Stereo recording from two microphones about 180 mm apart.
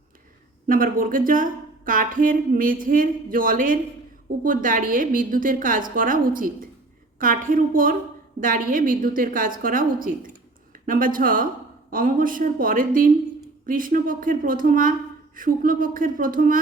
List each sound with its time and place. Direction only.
0.7 s a woman's voice: 50° right (ahead or behind)